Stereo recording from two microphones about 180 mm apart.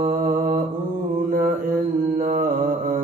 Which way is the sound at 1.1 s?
50° right (ahead or behind).